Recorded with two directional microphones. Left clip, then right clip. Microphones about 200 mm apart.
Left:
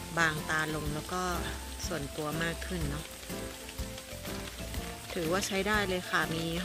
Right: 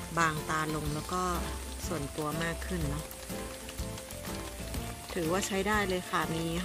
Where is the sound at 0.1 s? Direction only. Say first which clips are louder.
Even; 5° right (ahead or behind).